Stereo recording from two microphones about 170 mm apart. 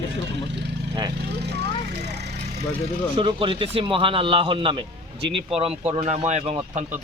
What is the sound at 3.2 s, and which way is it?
Speech, 30° right (ahead or behind).